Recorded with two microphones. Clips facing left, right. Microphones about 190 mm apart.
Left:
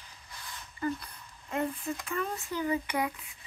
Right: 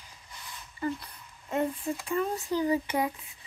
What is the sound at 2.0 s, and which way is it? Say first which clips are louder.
Speech: right 8 dB; 30° right (ahead or behind).